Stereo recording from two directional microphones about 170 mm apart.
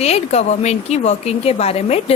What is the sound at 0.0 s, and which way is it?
A woman's voice, 40° left (ahead or behind).